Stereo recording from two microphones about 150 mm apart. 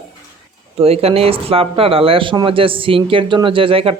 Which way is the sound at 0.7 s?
40° right (ahead or behind).